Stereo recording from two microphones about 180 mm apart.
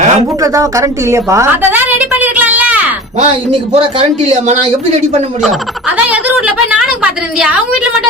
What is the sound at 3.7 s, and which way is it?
Speech, 30° right (ahead or behind).